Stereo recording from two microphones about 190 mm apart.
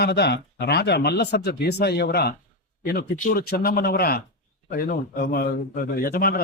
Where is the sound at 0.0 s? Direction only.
60° left (ahead or behind).